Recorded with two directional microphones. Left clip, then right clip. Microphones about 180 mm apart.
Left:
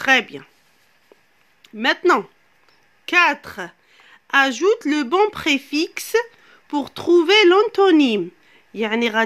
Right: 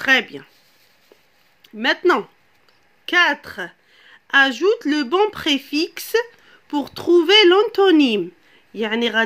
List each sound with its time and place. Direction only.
0.0 s speech: 20° left (ahead or behind)
1.6 s speech: 20° left (ahead or behind)